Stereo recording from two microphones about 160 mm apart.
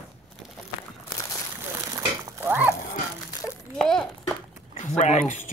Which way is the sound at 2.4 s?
15° right (ahead or behind).